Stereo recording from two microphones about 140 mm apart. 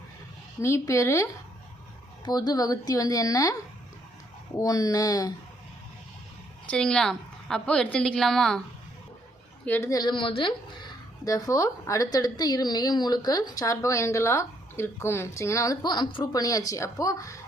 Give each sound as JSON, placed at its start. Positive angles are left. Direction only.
{"t": 0.6, "sound": "a woman's voice", "side_deg": 20}
{"t": 4.5, "sound": "a woman's voice", "side_deg": 25}
{"t": 6.7, "sound": "a woman's voice", "side_deg": 5}
{"t": 9.6, "sound": "speech", "side_deg": 15}
{"t": 9.9, "sound": "a woman's voice", "side_deg": 30}
{"t": 11.3, "sound": "a woman's voice", "side_deg": 25}